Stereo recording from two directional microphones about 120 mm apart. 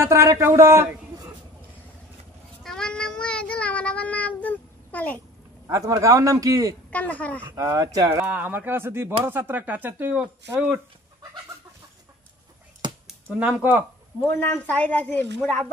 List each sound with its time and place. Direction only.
0.0 s a man's voice: 25° right (ahead or behind)
2.6 s child singing: 5° left (ahead or behind)
5.7 s a man's voice: 30° right (ahead or behind)
6.9 s a woman's voice: 10° left (ahead or behind)
7.4 s a man's voice: 25° right (ahead or behind)
8.2 s speech: 15° right (ahead or behind)
13.0 s speech: 10° right (ahead or behind)
14.2 s a woman's voice: 20° left (ahead or behind)